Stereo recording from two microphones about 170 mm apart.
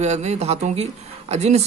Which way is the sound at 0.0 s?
40° right (ahead or behind).